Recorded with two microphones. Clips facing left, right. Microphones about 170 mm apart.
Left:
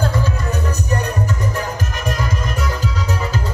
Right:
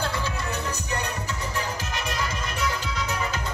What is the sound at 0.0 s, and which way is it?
Music, 45° left (ahead or behind).